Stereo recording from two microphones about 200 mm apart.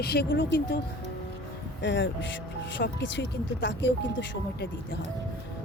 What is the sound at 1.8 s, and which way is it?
Speech, 65° left (ahead or behind).